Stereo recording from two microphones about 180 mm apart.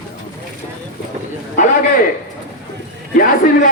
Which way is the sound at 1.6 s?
45° left (ahead or behind).